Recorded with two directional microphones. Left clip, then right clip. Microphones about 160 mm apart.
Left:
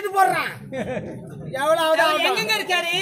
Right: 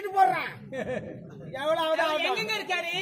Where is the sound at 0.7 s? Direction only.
65° right (ahead or behind).